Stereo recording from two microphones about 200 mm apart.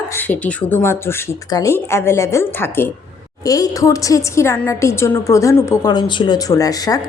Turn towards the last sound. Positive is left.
turn(degrees=20)  # may be behind; listen again after turning